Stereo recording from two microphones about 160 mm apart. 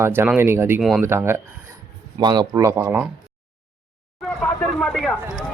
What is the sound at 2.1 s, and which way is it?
Speech, 25° right (ahead or behind).